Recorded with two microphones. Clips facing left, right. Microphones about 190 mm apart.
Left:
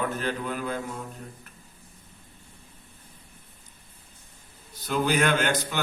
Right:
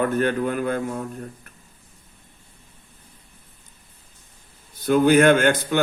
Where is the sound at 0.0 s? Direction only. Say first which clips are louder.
Right 8 dB; 55° right (ahead or behind).